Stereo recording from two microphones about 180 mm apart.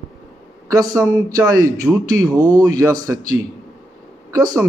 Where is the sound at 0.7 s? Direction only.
20° right (ahead or behind).